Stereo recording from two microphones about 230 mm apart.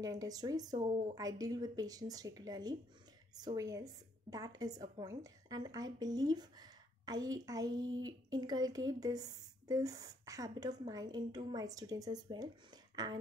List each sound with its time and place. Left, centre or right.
0.0 s a woman's voice: centre